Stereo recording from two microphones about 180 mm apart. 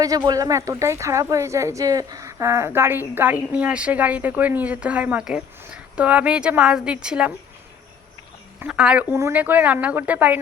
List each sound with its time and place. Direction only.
0.3 s speech: 20° right (ahead or behind)
8.5 s speech: 5° right (ahead or behind)